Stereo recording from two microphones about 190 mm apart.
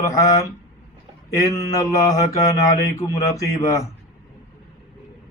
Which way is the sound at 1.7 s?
20° left (ahead or behind).